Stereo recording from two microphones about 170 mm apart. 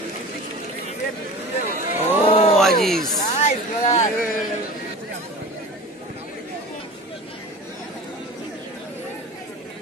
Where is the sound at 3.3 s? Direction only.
40° left (ahead or behind).